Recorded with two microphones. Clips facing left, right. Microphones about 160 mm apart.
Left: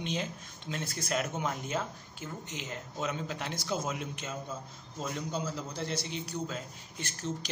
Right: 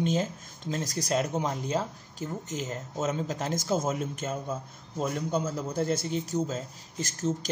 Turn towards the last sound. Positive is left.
turn(degrees=-40)  # may be behind; listen again after turning